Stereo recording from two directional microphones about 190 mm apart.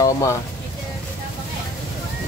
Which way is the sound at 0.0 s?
15° left (ahead or behind).